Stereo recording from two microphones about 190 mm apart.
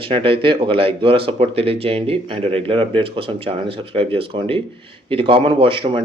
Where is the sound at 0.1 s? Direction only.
25° right (ahead or behind).